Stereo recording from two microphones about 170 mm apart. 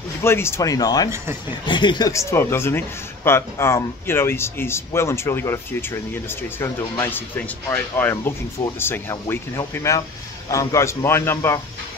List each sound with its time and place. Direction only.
0.2 s a man's voice: 15° left (ahead or behind)